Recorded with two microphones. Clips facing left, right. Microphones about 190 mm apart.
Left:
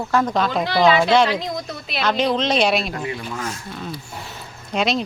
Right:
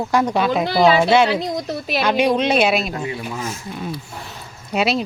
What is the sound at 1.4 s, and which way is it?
Speech, 35° right (ahead or behind).